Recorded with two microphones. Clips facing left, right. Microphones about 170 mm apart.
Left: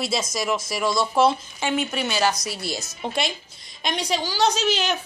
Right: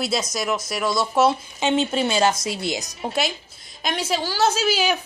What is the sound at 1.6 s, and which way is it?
Speech, 25° right (ahead or behind).